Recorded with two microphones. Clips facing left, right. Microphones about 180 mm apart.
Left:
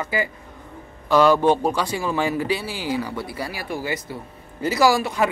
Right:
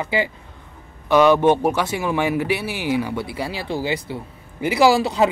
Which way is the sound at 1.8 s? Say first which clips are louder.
Right 2 dB; 20° right (ahead or behind).